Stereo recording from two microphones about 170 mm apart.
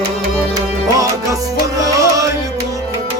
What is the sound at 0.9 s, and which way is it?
Music, 20° right (ahead or behind).